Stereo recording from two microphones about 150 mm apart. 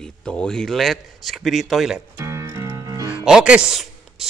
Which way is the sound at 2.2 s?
20° right (ahead or behind).